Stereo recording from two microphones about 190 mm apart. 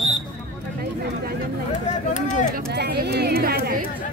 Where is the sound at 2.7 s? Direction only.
60° right (ahead or behind).